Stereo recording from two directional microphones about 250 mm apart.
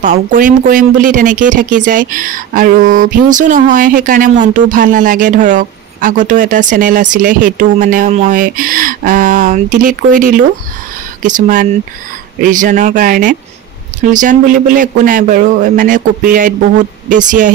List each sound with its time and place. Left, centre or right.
0.0 s speech: right